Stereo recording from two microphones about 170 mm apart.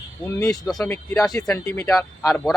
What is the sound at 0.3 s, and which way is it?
Speech, 20° left (ahead or behind).